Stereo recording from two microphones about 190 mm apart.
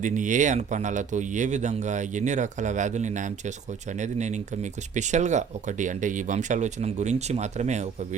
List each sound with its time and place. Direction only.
0.0 s speech: 40° right (ahead or behind)